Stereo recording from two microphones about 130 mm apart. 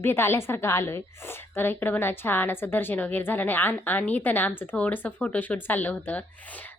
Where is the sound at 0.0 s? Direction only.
20° left (ahead or behind).